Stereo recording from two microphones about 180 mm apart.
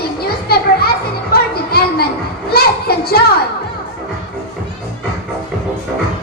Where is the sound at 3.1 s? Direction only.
60° left (ahead or behind).